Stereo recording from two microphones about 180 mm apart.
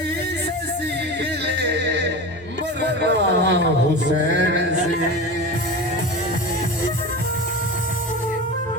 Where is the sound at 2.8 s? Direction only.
70° right (ahead or behind).